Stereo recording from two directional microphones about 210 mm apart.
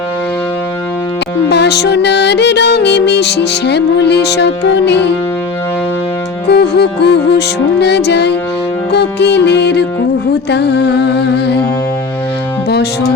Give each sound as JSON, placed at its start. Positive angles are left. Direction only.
{"t": 1.5, "sound": "music", "side_deg": 55}
{"t": 6.5, "sound": "music", "side_deg": 50}